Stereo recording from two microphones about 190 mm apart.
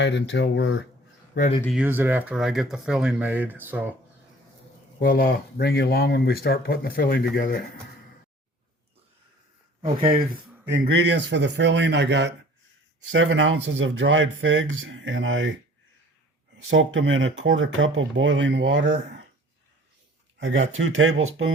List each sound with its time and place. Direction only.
0.0 s speech: 65° left (ahead or behind)
1.7 s speech: 10° right (ahead or behind)
4.9 s speech: 50° left (ahead or behind)
9.8 s speech: 25° right (ahead or behind)
10.2 s speech: 55° right (ahead or behind)
13.1 s speech: 90° right
16.6 s speech: 85° right
20.4 s speech: 90° right